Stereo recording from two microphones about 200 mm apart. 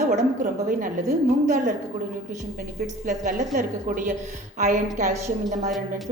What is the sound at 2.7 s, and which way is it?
A woman's voice, 50° right (ahead or behind).